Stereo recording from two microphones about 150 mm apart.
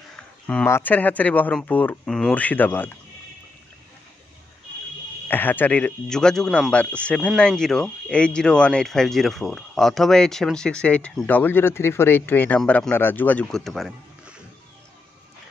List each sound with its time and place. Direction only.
0.1 s a man's voice: 10° left (ahead or behind)
5.3 s a man's voice: 10° left (ahead or behind)